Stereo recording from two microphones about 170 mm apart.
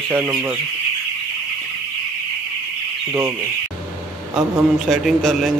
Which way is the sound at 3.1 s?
15° right (ahead or behind).